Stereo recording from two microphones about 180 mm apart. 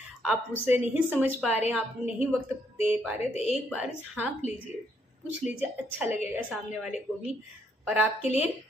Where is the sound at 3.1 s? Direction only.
35° left (ahead or behind).